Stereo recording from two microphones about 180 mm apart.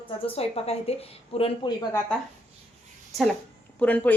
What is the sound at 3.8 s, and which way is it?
Speech, 10° left (ahead or behind).